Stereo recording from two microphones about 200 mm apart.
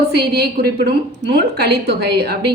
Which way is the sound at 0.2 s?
55° right (ahead or behind).